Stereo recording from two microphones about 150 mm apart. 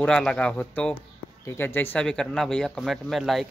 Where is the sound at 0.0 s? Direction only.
5° left (ahead or behind).